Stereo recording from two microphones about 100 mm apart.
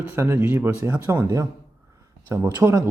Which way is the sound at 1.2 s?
30° right (ahead or behind).